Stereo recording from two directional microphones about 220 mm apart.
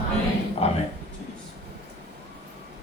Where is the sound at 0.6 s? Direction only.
30° left (ahead or behind).